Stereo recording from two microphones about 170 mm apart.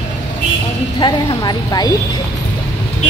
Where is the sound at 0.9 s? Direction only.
25° left (ahead or behind).